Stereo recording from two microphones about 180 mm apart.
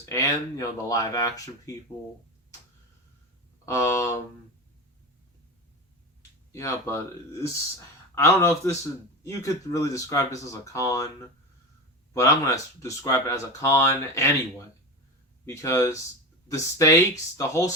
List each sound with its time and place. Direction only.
0.0 s speech: 15° left (ahead or behind)
3.7 s speech: 15° left (ahead or behind)
6.5 s speech: 15° left (ahead or behind)
8.1 s speech: 15° left (ahead or behind)
15.4 s speech: 15° left (ahead or behind)